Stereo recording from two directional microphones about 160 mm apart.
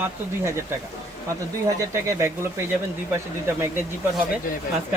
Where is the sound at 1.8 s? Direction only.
20° right (ahead or behind).